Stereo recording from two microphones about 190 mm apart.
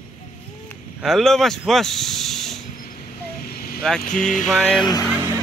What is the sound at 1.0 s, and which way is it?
Speech, centre (ahead or behind).